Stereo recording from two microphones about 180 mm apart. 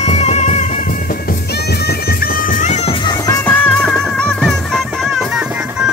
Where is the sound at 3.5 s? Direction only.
5° left (ahead or behind).